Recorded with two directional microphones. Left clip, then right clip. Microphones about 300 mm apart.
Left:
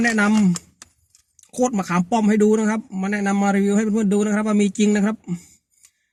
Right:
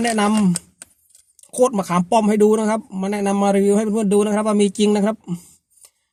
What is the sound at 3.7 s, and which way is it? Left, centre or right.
Speech, centre.